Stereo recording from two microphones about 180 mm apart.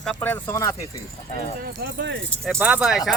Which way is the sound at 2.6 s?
10° right (ahead or behind).